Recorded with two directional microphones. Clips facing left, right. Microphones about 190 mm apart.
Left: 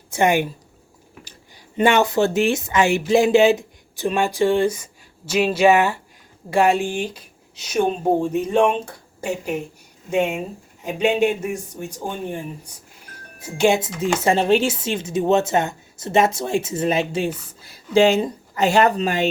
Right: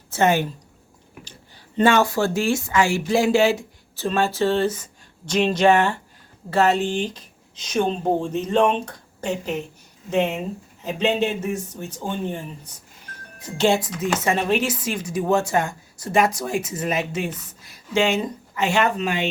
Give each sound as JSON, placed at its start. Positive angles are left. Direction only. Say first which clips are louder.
{"t": 0.1, "sound": "speech", "louder": "left 1 dB", "side_deg": 15}
{"t": 1.7, "sound": "speech", "louder": "left 1 dB", "side_deg": 15}
{"t": 13.7, "sound": "a woman's voice", "louder": "left 2 dB", "side_deg": 25}